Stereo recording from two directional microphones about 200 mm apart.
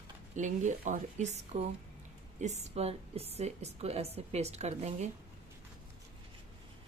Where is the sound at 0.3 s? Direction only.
40° right (ahead or behind).